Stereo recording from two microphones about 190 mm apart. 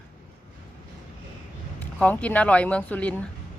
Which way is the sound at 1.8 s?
10° left (ahead or behind).